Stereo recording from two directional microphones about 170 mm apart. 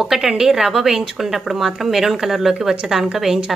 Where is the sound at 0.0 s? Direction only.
Centre (ahead or behind).